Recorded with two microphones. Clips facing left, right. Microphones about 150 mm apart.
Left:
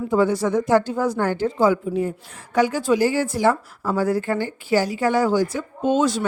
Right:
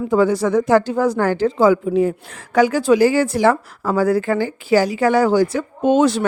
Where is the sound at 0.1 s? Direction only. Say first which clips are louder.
Right 3 dB; 90° right.